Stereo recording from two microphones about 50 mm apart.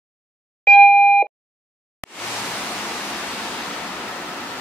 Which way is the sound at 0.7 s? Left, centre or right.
Centre.